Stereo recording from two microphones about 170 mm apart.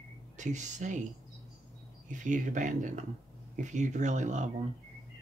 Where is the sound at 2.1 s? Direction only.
45° right (ahead or behind).